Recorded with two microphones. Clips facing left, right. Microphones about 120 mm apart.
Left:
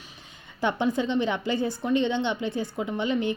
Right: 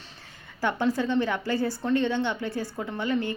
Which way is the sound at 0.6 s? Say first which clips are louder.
Left 1 dB; 20° left (ahead or behind).